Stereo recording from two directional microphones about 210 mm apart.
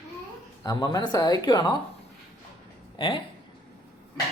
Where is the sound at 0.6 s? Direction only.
20° left (ahead or behind).